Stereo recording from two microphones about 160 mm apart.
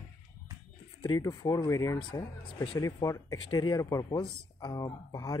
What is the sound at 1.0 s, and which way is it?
Speech, 20° left (ahead or behind).